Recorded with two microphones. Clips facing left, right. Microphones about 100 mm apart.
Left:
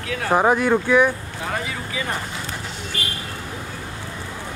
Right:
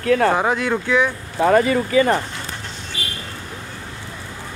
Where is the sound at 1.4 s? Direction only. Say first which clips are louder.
Right 12 dB; 60° right (ahead or behind).